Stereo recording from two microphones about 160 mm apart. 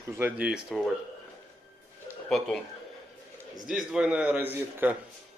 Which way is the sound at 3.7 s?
5° right (ahead or behind).